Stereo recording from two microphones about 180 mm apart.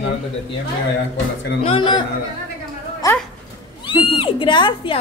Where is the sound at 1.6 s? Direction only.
30° left (ahead or behind).